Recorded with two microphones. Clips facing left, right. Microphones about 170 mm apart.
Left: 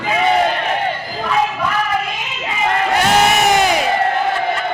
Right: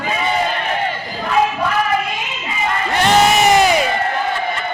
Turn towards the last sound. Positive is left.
turn(degrees=0)  # may be behind; listen again after turning